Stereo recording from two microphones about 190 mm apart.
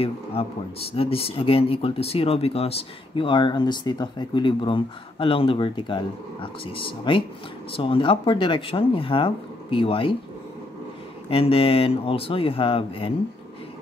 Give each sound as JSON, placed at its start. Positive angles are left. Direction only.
{"t": 0.0, "sound": "speech", "side_deg": 30}
{"t": 11.2, "sound": "speech", "side_deg": 30}